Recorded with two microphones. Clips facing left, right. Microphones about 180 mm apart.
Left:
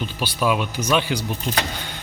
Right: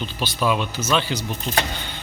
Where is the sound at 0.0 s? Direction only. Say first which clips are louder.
Left 1 dB; 10° left (ahead or behind).